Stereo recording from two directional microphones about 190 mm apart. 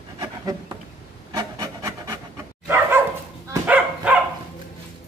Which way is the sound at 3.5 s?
5° right (ahead or behind).